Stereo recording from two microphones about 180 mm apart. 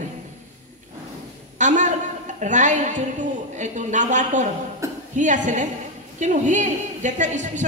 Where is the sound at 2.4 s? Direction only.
45° right (ahead or behind).